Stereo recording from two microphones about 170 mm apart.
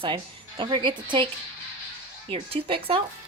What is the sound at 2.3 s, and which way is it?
Speech, 35° right (ahead or behind).